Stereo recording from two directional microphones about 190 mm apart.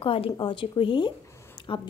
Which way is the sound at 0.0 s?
30° left (ahead or behind).